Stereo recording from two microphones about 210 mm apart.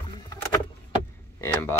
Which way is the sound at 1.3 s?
10° left (ahead or behind).